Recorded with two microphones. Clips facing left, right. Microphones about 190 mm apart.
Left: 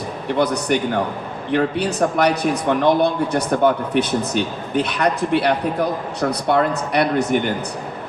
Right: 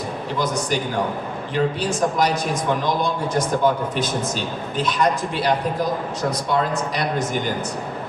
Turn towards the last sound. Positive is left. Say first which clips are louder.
# left 6 dB
turn(degrees=65)  # may be behind; listen again after turning